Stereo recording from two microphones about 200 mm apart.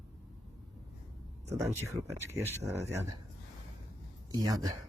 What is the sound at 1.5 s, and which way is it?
Speech, 10° right (ahead or behind).